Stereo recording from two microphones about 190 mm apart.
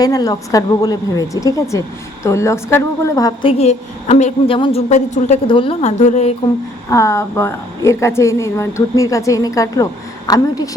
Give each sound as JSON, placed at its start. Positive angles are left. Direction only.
{"t": 0.0, "sound": "a woman's voice", "side_deg": 20}
{"t": 3.6, "sound": "a woman's voice", "side_deg": 35}
{"t": 6.9, "sound": "speech", "side_deg": 15}